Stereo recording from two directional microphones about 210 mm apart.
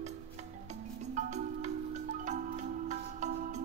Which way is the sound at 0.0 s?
35° right (ahead or behind).